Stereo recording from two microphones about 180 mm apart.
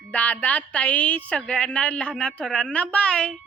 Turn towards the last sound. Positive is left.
turn(degrees=5)  # may be behind; listen again after turning